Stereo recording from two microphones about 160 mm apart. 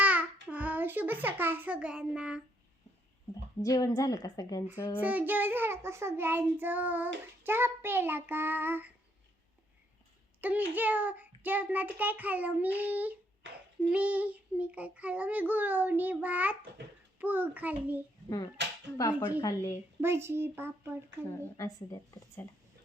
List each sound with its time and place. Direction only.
0.0 s child singing: 10° right (ahead or behind)
0.5 s a child's voice: 10° right (ahead or behind)
3.6 s a woman's voice: 20° left (ahead or behind)
4.9 s child singing: 10° right (ahead or behind)
10.4 s child singing: 10° right (ahead or behind)
18.6 s cap gun: 90° right
19.4 s a woman's voice: 20° left (ahead or behind)
20.0 s child singing: 15° right (ahead or behind)
21.2 s a woman's voice: 15° left (ahead or behind)